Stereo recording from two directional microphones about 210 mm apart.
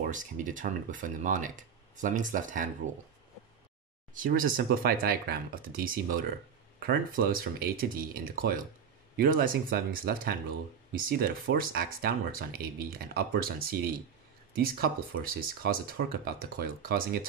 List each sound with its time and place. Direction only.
0.0 s speech: 40° right (ahead or behind)
4.1 s speech: 40° right (ahead or behind)